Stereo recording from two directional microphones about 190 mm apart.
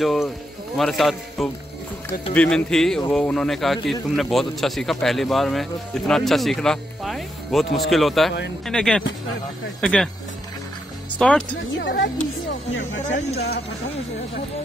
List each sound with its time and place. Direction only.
0.0 s a man's voice: centre (ahead or behind)
11.1 s speech: 5° left (ahead or behind)
11.7 s speech: 70° left (ahead or behind)